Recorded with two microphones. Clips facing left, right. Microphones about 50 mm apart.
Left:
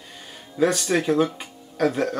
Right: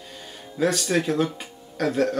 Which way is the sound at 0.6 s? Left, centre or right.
Centre.